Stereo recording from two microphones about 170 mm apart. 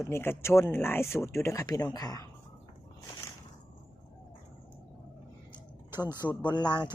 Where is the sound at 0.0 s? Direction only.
15° left (ahead or behind).